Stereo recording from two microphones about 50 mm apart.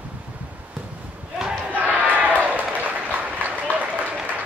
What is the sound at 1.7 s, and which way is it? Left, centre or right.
Crowd, right.